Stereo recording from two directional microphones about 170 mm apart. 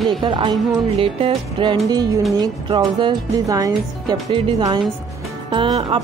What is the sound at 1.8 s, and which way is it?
Speech, 20° right (ahead or behind).